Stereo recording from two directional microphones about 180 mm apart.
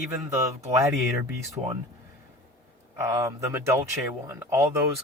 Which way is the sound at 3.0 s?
20° right (ahead or behind).